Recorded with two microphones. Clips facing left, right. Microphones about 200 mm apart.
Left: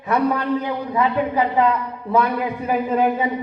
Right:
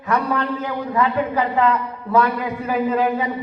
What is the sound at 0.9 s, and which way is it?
A woman's voice, 15° left (ahead or behind).